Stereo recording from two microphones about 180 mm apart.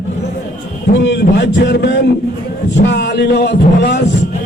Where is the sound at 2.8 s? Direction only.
70° left (ahead or behind).